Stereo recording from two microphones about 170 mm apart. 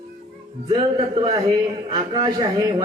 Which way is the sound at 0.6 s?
30° right (ahead or behind).